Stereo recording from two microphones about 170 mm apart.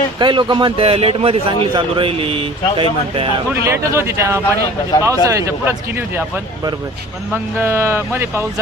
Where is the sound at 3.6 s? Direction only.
15° right (ahead or behind).